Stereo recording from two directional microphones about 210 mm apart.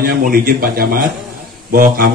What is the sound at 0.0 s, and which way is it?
Speech, 45° right (ahead or behind).